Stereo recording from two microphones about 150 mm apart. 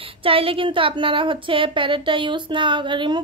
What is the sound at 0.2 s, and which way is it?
A woman's voice, 40° right (ahead or behind).